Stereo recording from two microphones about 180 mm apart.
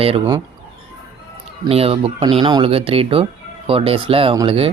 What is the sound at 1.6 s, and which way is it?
Speech, 35° right (ahead or behind).